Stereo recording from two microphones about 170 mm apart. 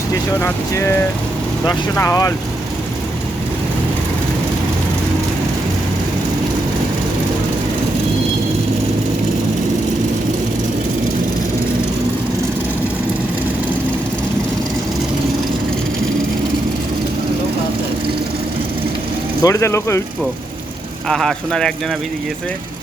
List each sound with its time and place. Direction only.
0.3 s speech: 15° left (ahead or behind)
19.4 s speech: 20° left (ahead or behind)
21.1 s speech: centre (ahead or behind)